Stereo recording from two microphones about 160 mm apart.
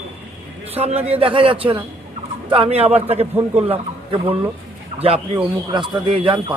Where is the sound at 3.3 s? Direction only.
10° right (ahead or behind).